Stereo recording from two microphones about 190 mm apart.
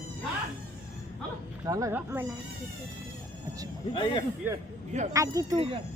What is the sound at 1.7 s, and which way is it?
Speech, 15° right (ahead or behind).